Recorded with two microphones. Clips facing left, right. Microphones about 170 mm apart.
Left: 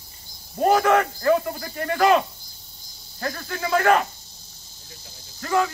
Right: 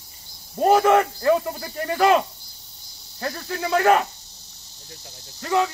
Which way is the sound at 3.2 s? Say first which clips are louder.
Right 1 dB; 5° right (ahead or behind).